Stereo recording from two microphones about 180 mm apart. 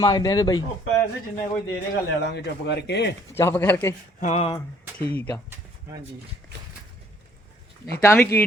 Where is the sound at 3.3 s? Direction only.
15° left (ahead or behind).